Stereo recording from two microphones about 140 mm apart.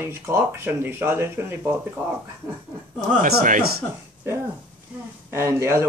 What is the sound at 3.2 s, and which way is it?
Speech, 80° right.